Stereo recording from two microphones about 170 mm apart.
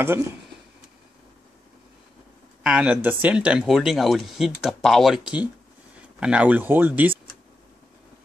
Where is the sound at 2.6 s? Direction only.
5° right (ahead or behind).